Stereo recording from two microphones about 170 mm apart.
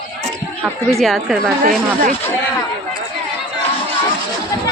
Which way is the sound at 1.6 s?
55° right (ahead or behind).